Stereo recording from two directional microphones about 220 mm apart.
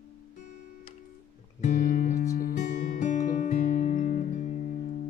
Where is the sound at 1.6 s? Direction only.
35° left (ahead or behind).